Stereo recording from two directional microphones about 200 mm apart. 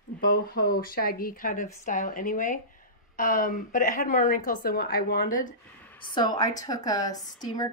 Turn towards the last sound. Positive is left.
turn(degrees=20)  # may be behind; listen again after turning